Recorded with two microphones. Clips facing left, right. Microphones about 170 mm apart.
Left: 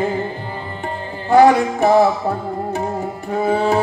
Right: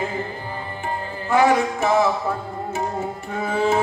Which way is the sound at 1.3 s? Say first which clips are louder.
Left 6 dB; 35° left (ahead or behind).